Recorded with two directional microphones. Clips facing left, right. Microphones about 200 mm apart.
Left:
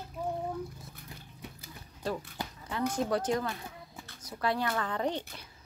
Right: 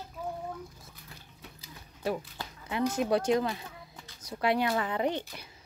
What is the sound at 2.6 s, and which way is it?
Speech, 10° right (ahead or behind).